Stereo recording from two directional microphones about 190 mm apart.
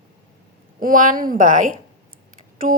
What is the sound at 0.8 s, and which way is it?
Speech, 45° right (ahead or behind).